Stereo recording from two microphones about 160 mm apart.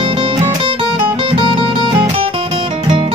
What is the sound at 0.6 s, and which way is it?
Music, 30° right (ahead or behind).